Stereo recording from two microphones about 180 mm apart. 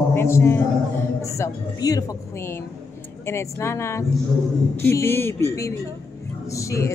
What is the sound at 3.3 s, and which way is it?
A woman's voice, 15° left (ahead or behind).